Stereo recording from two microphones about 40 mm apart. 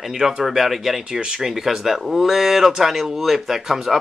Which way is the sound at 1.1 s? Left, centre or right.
Right.